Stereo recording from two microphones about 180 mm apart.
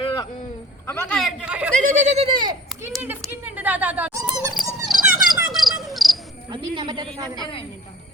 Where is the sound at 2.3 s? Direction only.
25° right (ahead or behind).